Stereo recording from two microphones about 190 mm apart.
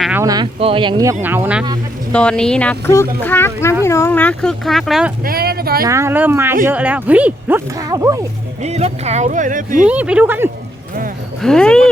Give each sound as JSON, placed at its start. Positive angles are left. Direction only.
{"t": 0.2, "sound": "speech", "side_deg": -20}
{"t": 1.2, "sound": "speech", "side_deg": -10}
{"t": 2.1, "sound": "speech", "side_deg": 5}
{"t": 5.2, "sound": "speech", "side_deg": -55}
{"t": 5.8, "sound": "speech", "side_deg": -15}
{"t": 8.6, "sound": "speech", "side_deg": -35}
{"t": 9.8, "sound": "speech", "side_deg": -5}
{"t": 11.4, "sound": "speech", "side_deg": 5}